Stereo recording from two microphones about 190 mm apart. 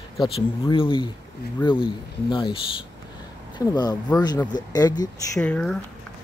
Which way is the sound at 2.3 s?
25° left (ahead or behind).